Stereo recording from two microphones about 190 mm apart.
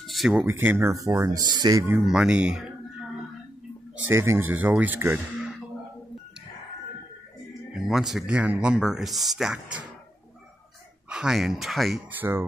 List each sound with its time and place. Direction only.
0.0 s a sound: centre (ahead or behind)
0.3 s speech: 10° right (ahead or behind)
2.0 s speech: 5° right (ahead or behind)
4.1 s speech: 15° right (ahead or behind)
7.7 s speech: centre (ahead or behind)
11.1 s speech: 5° right (ahead or behind)